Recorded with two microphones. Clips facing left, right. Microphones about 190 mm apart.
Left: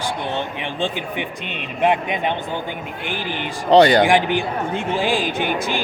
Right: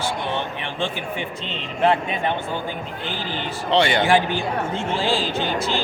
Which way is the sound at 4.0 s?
15° left (ahead or behind).